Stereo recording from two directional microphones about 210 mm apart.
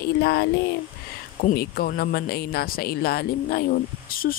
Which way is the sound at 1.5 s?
45° left (ahead or behind).